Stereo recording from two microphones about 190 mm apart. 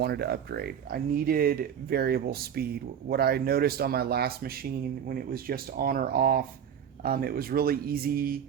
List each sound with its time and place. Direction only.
0.0 s speech: 60° right (ahead or behind)